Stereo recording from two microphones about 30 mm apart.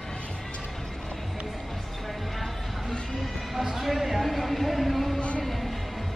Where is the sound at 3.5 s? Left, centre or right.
Centre.